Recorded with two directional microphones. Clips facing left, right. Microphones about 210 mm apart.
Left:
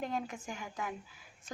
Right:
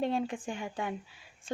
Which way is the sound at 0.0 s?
30° right (ahead or behind).